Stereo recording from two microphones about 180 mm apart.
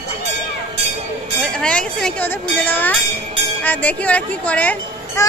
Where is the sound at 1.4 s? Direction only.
5° left (ahead or behind).